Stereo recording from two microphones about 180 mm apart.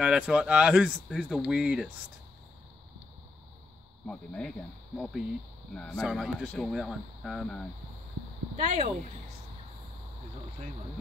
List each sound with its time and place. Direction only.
0.0 s speech: 5° right (ahead or behind)
4.0 s speech: 5° left (ahead or behind)
8.5 s speech: 40° right (ahead or behind)